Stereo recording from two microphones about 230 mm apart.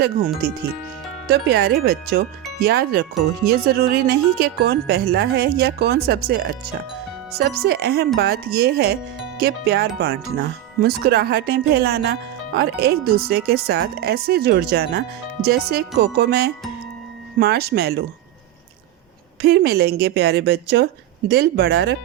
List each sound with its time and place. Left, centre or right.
1.3 s speech: right
19.4 s speech: right